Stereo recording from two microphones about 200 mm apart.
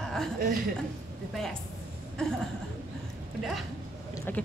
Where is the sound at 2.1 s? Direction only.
Centre (ahead or behind).